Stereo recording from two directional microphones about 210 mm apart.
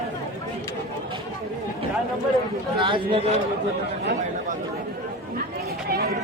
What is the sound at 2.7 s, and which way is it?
Speech, 25° right (ahead or behind).